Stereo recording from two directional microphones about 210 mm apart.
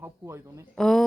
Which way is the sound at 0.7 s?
Centre (ahead or behind).